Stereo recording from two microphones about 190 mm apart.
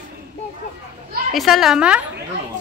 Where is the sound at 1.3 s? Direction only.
Centre (ahead or behind).